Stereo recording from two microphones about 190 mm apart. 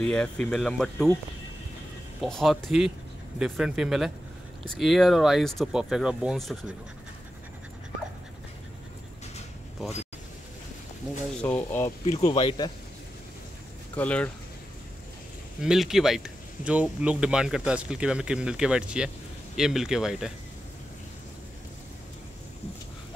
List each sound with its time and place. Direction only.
0.0 s speech: 5° left (ahead or behind)
2.2 s speech: centre (ahead or behind)
11.4 s speech: 10° left (ahead or behind)
12.0 s speech: 35° left (ahead or behind)
12.3 s speech: 25° left (ahead or behind)
13.9 s speech: 10° left (ahead or behind)
15.6 s speech: centre (ahead or behind)